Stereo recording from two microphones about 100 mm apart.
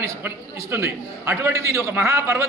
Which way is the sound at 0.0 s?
25° right (ahead or behind).